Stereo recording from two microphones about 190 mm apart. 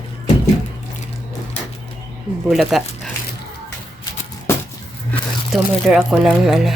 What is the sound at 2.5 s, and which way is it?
Speech, centre (ahead or behind).